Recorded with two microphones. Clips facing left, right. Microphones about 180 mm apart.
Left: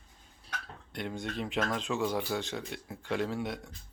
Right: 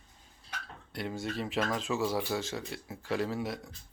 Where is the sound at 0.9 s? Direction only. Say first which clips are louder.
Right 1 dB; 5° right (ahead or behind).